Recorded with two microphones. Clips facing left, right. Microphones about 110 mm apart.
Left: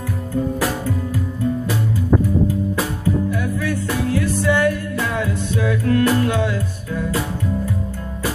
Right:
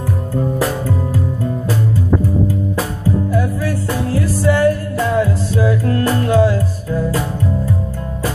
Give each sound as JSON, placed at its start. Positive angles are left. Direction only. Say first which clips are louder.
{"t": 0.4, "sound": "music", "louder": "right 2 dB", "side_deg": -35}
{"t": 3.3, "sound": "music", "louder": "right 3 dB", "side_deg": -35}